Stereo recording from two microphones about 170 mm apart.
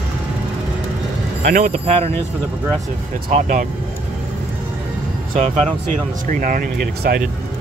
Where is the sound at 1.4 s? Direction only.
50° right (ahead or behind).